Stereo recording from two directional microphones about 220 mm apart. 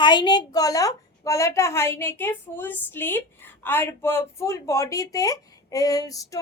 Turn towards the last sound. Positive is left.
turn(degrees=15)  # may be behind; listen again after turning